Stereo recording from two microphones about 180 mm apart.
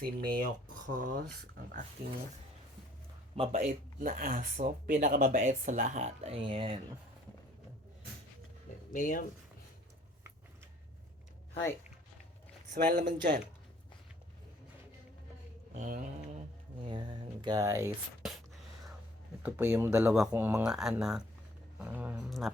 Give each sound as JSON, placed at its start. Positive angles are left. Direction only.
{"t": 0.0, "sound": "speech", "side_deg": -50}
{"t": 3.5, "sound": "speech", "side_deg": -45}
{"t": 8.9, "sound": "speech", "side_deg": 45}
{"t": 12.7, "sound": "speech", "side_deg": -55}
{"t": 15.7, "sound": "speech", "side_deg": -45}
{"t": 16.8, "sound": "a sound", "side_deg": -25}
{"t": 19.4, "sound": "speech", "side_deg": -10}